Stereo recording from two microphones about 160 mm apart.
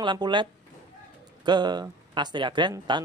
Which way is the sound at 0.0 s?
30° right (ahead or behind).